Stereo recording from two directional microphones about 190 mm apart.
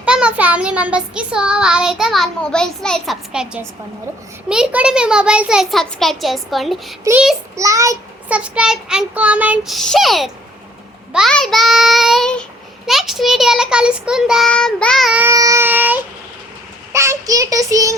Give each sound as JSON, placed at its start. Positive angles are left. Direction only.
{"t": 0.0, "sound": "child singing", "side_deg": -5}
{"t": 7.0, "sound": "child singing", "side_deg": -10}
{"t": 8.3, "sound": "child singing", "side_deg": -5}